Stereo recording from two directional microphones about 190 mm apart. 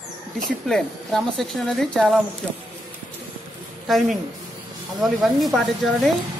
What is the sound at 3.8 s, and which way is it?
A woman's voice, centre (ahead or behind).